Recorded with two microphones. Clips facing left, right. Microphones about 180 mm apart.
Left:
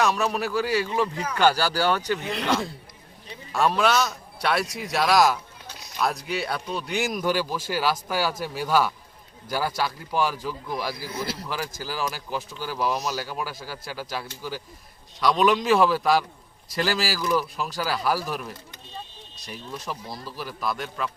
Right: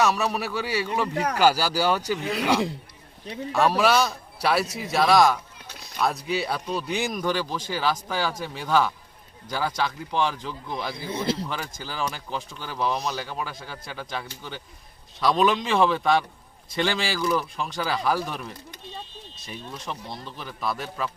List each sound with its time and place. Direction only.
0.0 s speech: centre (ahead or behind)
1.1 s speech: 70° right (ahead or behind)
1.4 s speech: 10° right (ahead or behind)
3.5 s a man's voice: centre (ahead or behind)
10.9 s speech: 25° right (ahead or behind)
11.4 s speech: 5° left (ahead or behind)
19.4 s speech: centre (ahead or behind)